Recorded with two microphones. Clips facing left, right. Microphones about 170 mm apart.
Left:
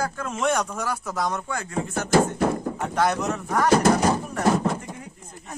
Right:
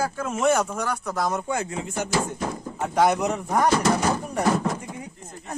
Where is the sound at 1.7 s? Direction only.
50° left (ahead or behind).